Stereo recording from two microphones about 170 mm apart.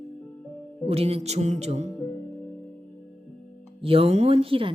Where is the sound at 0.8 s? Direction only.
35° right (ahead or behind).